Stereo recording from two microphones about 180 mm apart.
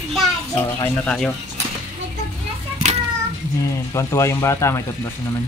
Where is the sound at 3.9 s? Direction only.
15° left (ahead or behind).